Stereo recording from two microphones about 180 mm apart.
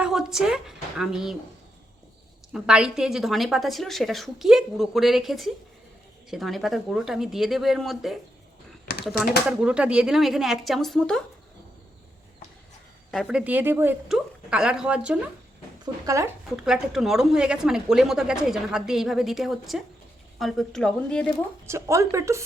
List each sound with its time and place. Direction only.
0.0 s a woman's voice: 5° right (ahead or behind)
2.5 s a woman's voice: 5° right (ahead or behind)
9.5 s a woman's voice: 5° right (ahead or behind)
13.1 s a woman's voice: 5° right (ahead or behind)
16.0 s speech: 15° right (ahead or behind)
16.6 s a woman's voice: 5° right (ahead or behind)
21.7 s speech: 15° right (ahead or behind)